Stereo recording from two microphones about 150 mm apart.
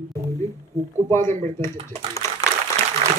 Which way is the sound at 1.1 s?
15° left (ahead or behind).